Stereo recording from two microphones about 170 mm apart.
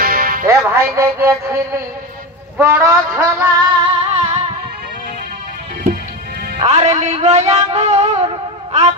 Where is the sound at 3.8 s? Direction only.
40° right (ahead or behind).